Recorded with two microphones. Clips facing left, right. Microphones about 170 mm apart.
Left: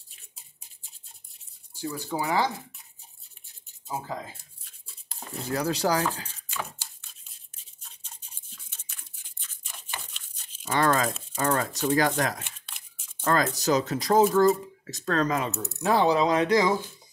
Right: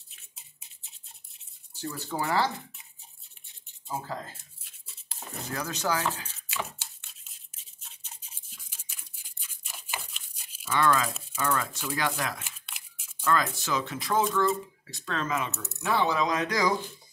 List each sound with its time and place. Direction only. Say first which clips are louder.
1.7 s speech: left 3 dB; 10° left (ahead or behind)
3.9 s speech: left 1 dB; 10° left (ahead or behind)
5.5 s speech: left 5 dB; 35° left (ahead or behind)
8.1 s toothbrush: left 1 dB; 10° right (ahead or behind)
10.6 s speech: left 2 dB; 35° left (ahead or behind)